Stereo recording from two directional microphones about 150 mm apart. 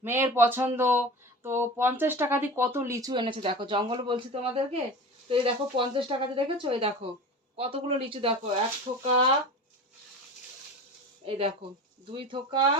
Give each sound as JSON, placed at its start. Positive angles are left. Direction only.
{"t": 0.0, "sound": "speech", "side_deg": -15}
{"t": 11.3, "sound": "speech", "side_deg": -40}